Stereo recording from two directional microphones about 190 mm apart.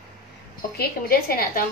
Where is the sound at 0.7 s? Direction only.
50° left (ahead or behind).